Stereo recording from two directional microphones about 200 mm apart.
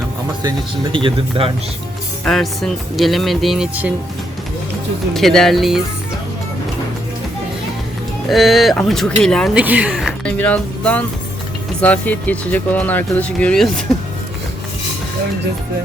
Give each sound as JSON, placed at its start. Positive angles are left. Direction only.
{"t": 0.9, "sound": "speech", "side_deg": -25}
{"t": 2.2, "sound": "speech", "side_deg": 0}
{"t": 5.1, "sound": "speech", "side_deg": 0}
{"t": 8.3, "sound": "speech", "side_deg": 0}